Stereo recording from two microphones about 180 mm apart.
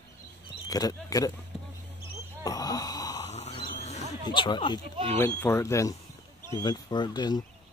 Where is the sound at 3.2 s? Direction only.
35° left (ahead or behind).